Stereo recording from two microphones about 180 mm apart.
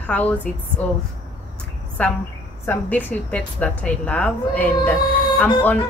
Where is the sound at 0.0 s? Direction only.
10° left (ahead or behind).